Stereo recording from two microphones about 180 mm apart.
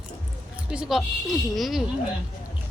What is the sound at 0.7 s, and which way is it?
Speech, 5° right (ahead or behind).